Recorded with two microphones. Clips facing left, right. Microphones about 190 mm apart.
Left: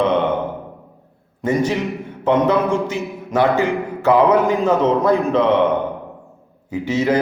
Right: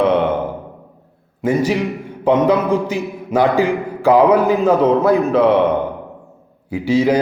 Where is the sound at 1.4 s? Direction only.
10° right (ahead or behind).